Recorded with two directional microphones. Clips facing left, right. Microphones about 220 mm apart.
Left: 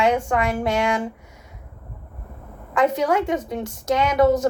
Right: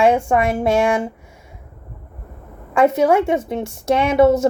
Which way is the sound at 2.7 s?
25° right (ahead or behind).